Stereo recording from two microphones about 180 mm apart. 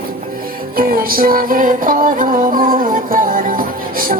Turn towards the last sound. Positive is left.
turn(degrees=-50)  # may be behind; listen again after turning